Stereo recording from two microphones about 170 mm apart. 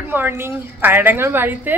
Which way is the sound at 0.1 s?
15° right (ahead or behind).